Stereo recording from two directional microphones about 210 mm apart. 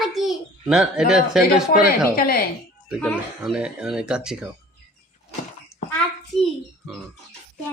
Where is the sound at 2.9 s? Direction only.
5° right (ahead or behind).